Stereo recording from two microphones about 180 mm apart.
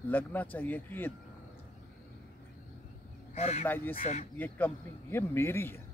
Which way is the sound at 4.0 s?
40° left (ahead or behind).